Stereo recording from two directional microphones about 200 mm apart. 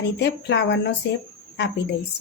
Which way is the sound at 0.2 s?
60° left (ahead or behind).